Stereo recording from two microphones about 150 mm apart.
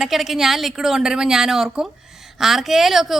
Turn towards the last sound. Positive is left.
turn(degrees=0)  # may be behind; listen again after turning